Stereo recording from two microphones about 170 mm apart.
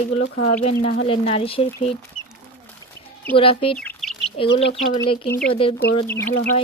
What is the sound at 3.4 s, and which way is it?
Speech, 35° left (ahead or behind).